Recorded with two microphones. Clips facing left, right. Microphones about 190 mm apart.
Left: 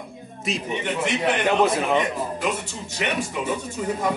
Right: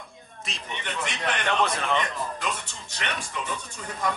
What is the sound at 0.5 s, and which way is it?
Speech, 10° left (ahead or behind).